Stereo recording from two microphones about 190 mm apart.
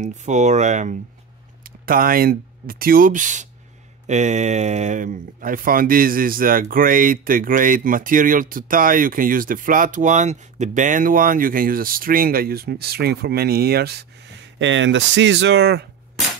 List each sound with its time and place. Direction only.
0.0 s speech: 40° right (ahead or behind); by 15.9 s 60° right (ahead or behind)